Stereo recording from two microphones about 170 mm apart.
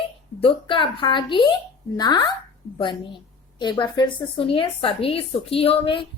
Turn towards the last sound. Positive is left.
turn(degrees=30)  # may be behind; listen again after turning